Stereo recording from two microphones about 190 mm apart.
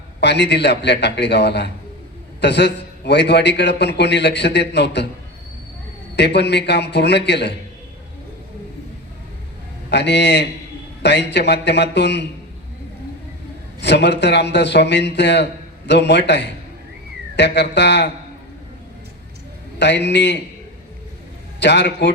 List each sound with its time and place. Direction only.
0.2 s a man's voice: 65° left (ahead or behind)
6.1 s a man's voice: 65° left (ahead or behind)
9.9 s a man's voice: 65° left (ahead or behind)
13.8 s a man's voice: 65° left (ahead or behind)
19.8 s a man's voice: 65° left (ahead or behind)
21.6 s a man's voice: 65° left (ahead or behind)